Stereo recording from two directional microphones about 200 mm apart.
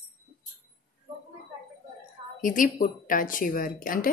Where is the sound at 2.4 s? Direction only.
45° left (ahead or behind).